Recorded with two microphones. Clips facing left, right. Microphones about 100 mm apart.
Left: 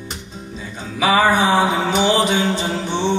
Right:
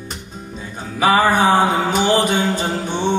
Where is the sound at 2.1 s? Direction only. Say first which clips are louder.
Even; 45° right (ahead or behind).